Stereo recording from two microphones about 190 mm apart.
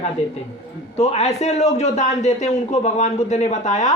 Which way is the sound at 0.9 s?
35° left (ahead or behind).